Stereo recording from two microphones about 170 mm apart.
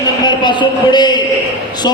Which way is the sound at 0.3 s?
25° left (ahead or behind).